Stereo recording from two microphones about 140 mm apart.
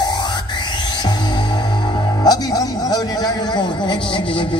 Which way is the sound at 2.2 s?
25° left (ahead or behind).